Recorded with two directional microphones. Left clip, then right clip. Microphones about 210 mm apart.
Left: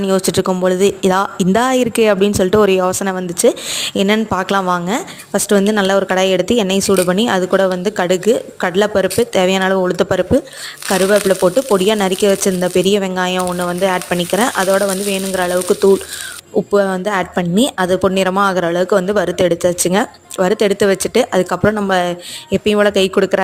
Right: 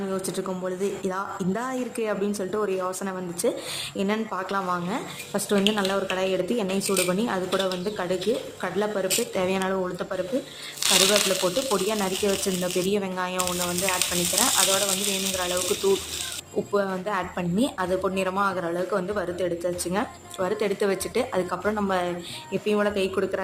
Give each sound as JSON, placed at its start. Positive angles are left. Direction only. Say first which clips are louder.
{"t": 0.1, "sound": "speech", "louder": "left 14 dB", "side_deg": 45}
{"t": 16.7, "sound": "speech", "louder": "left 11 dB", "side_deg": 35}